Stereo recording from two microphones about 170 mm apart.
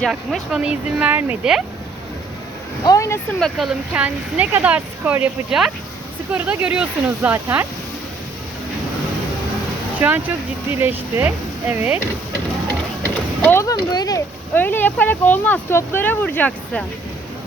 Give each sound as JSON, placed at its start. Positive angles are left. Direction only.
{"t": 0.0, "sound": "speech", "side_deg": 0}
{"t": 2.8, "sound": "speech", "side_deg": 20}
{"t": 3.4, "sound": "speech", "side_deg": -5}
{"t": 10.0, "sound": "speech", "side_deg": -10}
{"t": 13.4, "sound": "speech", "side_deg": 15}
{"t": 14.5, "sound": "speech", "side_deg": 10}